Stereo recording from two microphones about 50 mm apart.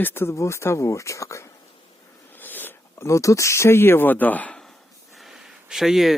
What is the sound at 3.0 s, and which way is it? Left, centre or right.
Speech, left.